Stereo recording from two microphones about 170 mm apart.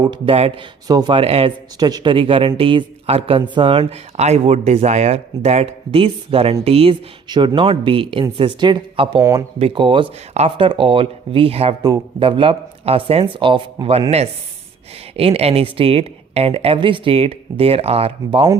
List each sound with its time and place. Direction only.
0.1 s speech: 35° right (ahead or behind)
0.9 s speech: 25° right (ahead or behind)
9.2 s speech: 20° right (ahead or behind)
9.6 s speech: 30° right (ahead or behind)
11.8 s speech: 20° right (ahead or behind)
15.1 s speech: 35° right (ahead or behind)